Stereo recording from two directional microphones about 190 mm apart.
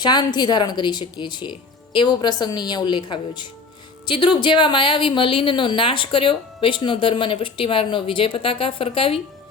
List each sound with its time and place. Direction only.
0.0 s speech: 20° left (ahead or behind)